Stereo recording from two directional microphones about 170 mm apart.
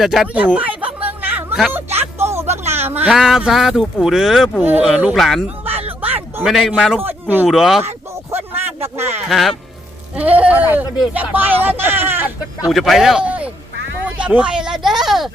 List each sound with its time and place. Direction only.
0.0 s speech: centre (ahead or behind)
1.0 s chatter: 10° right (ahead or behind)
1.7 s music: 15° right (ahead or behind)
4.0 s speech: 5° right (ahead or behind)
5.7 s a sound: 35° right (ahead or behind)
6.1 s a man's voice: 5° right (ahead or behind)
7.9 s a sound: 15° right (ahead or behind)
9.3 s speech: centre (ahead or behind)
12.7 s speech: centre (ahead or behind)